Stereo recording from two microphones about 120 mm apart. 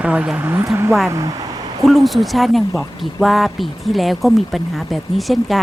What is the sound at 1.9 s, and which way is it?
A woman's voice, centre (ahead or behind).